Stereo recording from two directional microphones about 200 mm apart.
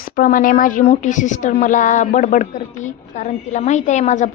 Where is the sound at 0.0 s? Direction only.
45° left (ahead or behind).